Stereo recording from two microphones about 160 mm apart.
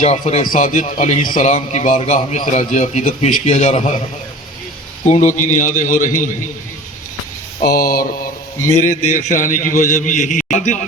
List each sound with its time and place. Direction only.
0.0 s a man's voice: 40° left (ahead or behind)
0.4 s a man's voice: 55° left (ahead or behind)
5.0 s a man's voice: 45° left (ahead or behind)
7.8 s speech: 65° left (ahead or behind)
8.7 s a man's voice: 50° left (ahead or behind)